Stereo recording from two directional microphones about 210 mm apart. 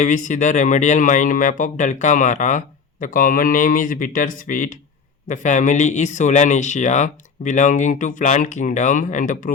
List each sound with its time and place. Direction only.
0.0 s speech: 35° left (ahead or behind)